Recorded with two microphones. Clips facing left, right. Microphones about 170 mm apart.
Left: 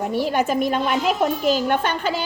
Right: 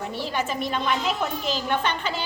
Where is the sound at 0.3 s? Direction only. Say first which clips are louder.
Left 6 dB; 50° left (ahead or behind).